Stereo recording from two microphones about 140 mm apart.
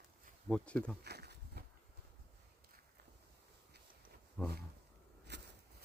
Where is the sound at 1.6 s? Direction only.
90° right.